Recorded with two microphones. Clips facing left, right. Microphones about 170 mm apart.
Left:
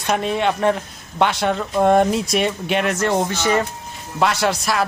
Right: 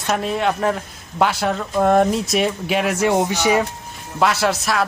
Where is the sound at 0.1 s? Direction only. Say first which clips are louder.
Left 1 dB; centre (ahead or behind).